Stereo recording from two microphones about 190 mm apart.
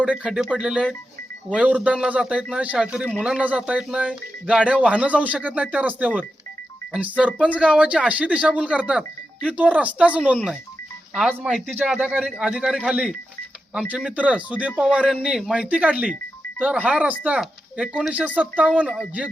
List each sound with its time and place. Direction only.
0.0 s a man's voice: 5° right (ahead or behind)